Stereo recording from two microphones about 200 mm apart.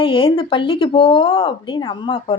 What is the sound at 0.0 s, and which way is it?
Speech, 25° left (ahead or behind).